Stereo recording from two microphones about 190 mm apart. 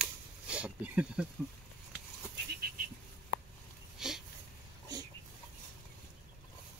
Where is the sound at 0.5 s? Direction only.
5° right (ahead or behind).